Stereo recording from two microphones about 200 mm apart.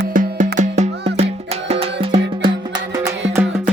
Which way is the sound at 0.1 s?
40° right (ahead or behind).